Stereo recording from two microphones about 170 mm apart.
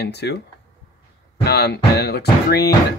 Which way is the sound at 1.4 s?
70° left (ahead or behind).